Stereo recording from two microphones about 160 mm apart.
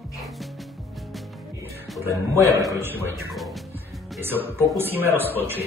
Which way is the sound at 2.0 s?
15° right (ahead or behind).